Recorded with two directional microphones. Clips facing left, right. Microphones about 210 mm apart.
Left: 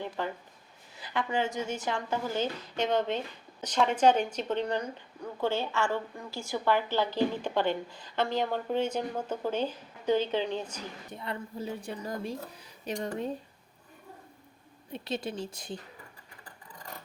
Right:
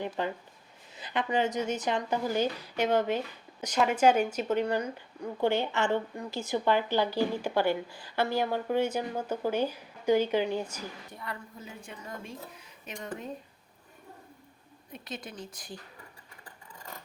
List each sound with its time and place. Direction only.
0.2 s speech: 20° right (ahead or behind)
11.1 s a woman's voice: 25° left (ahead or behind)
14.9 s speech: 30° left (ahead or behind)